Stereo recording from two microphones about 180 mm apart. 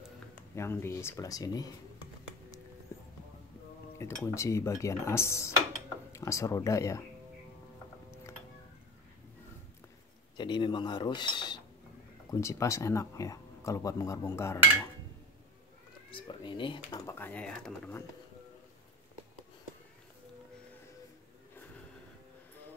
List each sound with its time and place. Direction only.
0.6 s speech: 15° left (ahead or behind)
2.9 s music: 15° left (ahead or behind)
4.0 s speech: 15° left (ahead or behind)
8.1 s music: 15° left (ahead or behind)
10.3 s speech: 25° left (ahead or behind)
16.1 s speech: 25° left (ahead or behind)
17.0 s speech: 10° left (ahead or behind)